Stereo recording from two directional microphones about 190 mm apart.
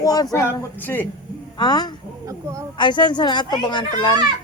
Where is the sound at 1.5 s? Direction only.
20° left (ahead or behind).